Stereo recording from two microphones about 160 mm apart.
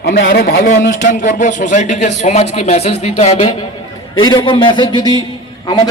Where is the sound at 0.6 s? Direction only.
55° left (ahead or behind).